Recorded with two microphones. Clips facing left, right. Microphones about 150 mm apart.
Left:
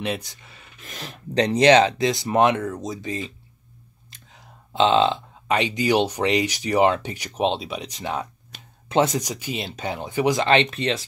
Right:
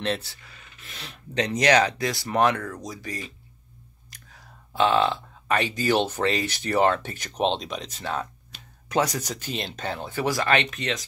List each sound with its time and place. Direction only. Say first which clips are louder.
0.0 s speech: even; 15° left (ahead or behind)
0.8 s speech: left 6 dB; 45° left (ahead or behind); by 8.3 s 15° left (ahead or behind)
8.8 s speech: left 4 dB; 25° left (ahead or behind)
9.2 s speech: left 2 dB; 10° left (ahead or behind); by 11.1 s 30° left (ahead or behind)